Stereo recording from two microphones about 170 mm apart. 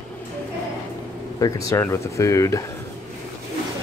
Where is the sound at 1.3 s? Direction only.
20° left (ahead or behind).